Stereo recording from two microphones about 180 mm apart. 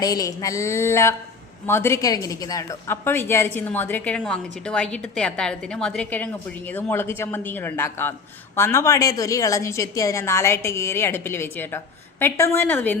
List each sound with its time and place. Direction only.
0.0 s a woman's voice: 20° left (ahead or behind)